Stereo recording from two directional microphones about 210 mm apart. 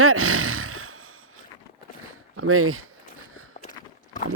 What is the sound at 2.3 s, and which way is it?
Speech, 90° right.